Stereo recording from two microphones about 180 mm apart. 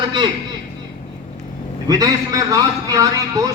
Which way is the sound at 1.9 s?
20° right (ahead or behind).